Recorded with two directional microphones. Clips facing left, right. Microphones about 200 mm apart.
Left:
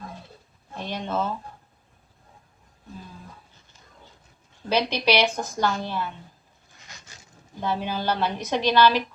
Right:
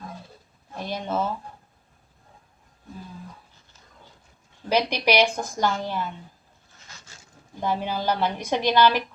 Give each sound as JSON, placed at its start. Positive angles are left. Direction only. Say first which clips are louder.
{"t": 0.8, "sound": "speech", "louder": "right 1 dB", "side_deg": -10}
{"t": 4.7, "sound": "a woman's voice", "louder": "right 1 dB", "side_deg": -10}
{"t": 7.6, "sound": "a woman's voice", "louder": "right 1 dB", "side_deg": -10}